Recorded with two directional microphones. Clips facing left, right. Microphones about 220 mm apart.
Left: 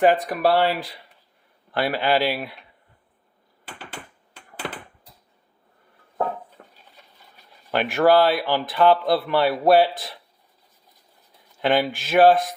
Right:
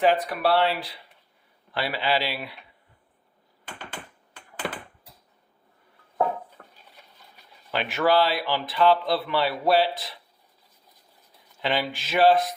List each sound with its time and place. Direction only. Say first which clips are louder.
0.0 s speech: left 4 dB; 45° left (ahead or behind)
7.7 s speech: left 5 dB; 50° left (ahead or behind)
11.6 s speech: left 6 dB; 50° left (ahead or behind)